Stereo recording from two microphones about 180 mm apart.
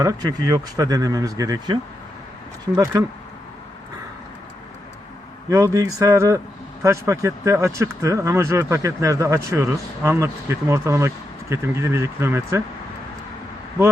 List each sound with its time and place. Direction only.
0.0 s speech: 20° right (ahead or behind)
5.5 s speech: 15° right (ahead or behind)